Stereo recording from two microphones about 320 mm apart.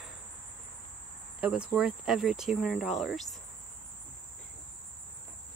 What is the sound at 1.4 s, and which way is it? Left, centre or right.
Cricket, centre.